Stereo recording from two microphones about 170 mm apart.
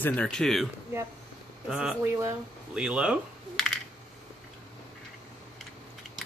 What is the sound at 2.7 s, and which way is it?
Coin, 5° right (ahead or behind).